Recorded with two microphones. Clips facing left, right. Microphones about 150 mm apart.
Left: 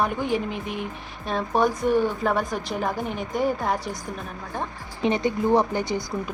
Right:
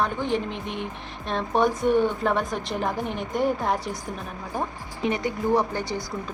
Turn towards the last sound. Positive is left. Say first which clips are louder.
# left 3 dB
turn(degrees=15)  # may be behind; listen again after turning